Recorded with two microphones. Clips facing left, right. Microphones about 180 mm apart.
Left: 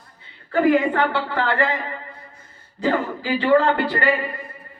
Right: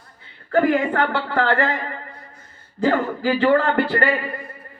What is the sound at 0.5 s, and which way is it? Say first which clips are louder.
Speech: left 1 dB; 50° right (ahead or behind).